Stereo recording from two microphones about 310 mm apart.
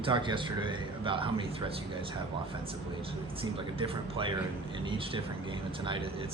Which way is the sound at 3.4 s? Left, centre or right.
Centre.